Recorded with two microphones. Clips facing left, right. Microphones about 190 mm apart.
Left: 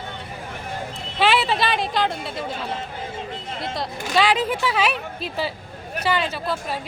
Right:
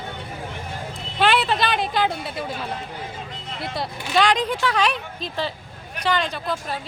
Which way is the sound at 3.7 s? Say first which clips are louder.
Even; 5° left (ahead or behind).